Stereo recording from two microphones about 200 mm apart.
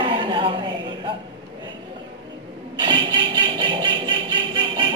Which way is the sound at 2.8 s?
25° right (ahead or behind).